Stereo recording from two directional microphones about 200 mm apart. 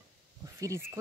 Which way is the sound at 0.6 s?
15° right (ahead or behind).